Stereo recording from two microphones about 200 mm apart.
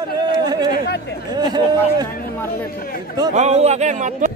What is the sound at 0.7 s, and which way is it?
Speech, 50° left (ahead or behind).